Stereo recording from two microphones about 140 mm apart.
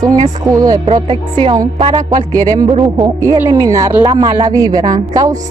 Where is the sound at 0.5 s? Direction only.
25° right (ahead or behind).